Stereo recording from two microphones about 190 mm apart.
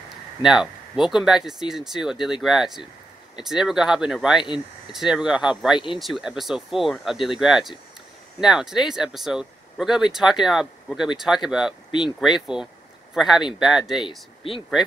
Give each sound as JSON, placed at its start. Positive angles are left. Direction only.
{"t": 0.4, "sound": "speech", "side_deg": 0}
{"t": 14.0, "sound": "speech", "side_deg": 30}